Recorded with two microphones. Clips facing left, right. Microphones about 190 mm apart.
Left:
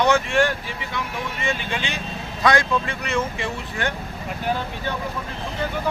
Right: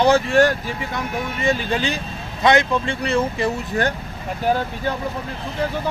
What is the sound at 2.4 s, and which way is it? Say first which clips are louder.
Speech: right 3 dB; 25° right (ahead or behind).